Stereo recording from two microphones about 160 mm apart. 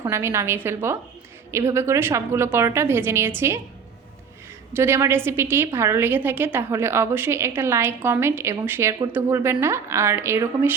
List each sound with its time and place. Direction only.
0.0 s a woman's voice: 15° right (ahead or behind)
4.7 s a woman's voice: 15° right (ahead or behind)